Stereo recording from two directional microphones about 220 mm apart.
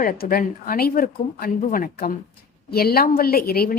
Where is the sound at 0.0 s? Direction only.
40° left (ahead or behind).